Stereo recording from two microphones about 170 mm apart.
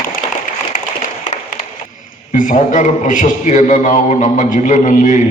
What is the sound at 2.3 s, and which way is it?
A man's voice, 50° left (ahead or behind).